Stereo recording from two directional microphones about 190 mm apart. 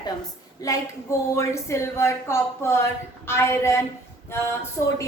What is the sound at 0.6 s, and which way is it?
A woman's voice, 20° left (ahead or behind).